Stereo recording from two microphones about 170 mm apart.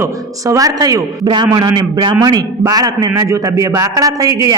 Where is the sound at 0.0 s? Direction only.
20° right (ahead or behind).